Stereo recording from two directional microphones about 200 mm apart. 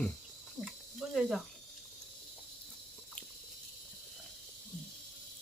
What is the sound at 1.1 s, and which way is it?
Speech, centre (ahead or behind).